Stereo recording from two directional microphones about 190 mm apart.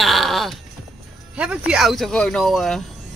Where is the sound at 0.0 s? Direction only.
Centre (ahead or behind).